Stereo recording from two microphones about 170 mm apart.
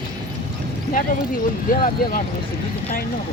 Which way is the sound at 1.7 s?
55° left (ahead or behind).